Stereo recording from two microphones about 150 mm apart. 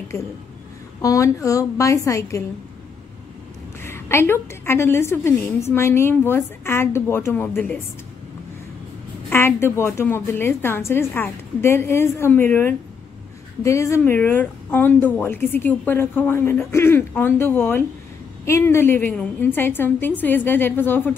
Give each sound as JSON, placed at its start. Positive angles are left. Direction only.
{"t": 1.0, "sound": "a woman's voice", "side_deg": 20}
{"t": 3.8, "sound": "a woman's voice", "side_deg": 15}
{"t": 9.3, "sound": "a woman's voice", "side_deg": 15}